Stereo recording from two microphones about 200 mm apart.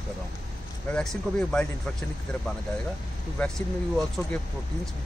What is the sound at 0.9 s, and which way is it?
Speech, 5° left (ahead or behind).